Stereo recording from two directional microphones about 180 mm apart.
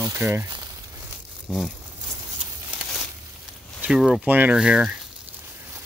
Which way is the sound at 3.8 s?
5° right (ahead or behind).